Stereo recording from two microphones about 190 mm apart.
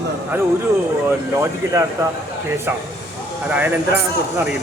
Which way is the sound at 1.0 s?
15° right (ahead or behind).